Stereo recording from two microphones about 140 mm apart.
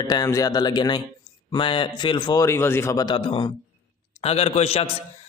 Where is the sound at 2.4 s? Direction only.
20° left (ahead or behind); by 3.5 s 35° left (ahead or behind).